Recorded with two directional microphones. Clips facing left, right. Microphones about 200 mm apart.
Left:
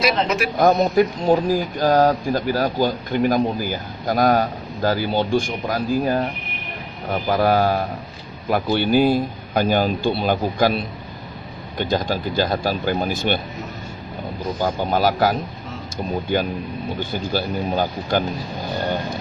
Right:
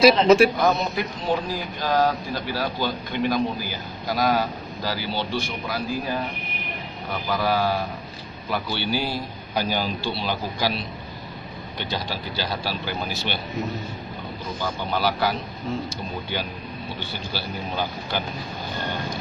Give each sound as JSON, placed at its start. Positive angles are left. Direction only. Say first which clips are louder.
{"t": 0.0, "sound": "speech", "louder": "right 6 dB", "side_deg": -30}
{"t": 0.6, "sound": "speech", "louder": "left 7 dB", "side_deg": 50}
{"t": 14.6, "sound": "speech", "louder": "left 6 dB", "side_deg": 45}